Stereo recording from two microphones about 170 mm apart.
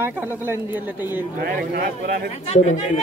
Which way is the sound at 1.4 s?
60° right (ahead or behind).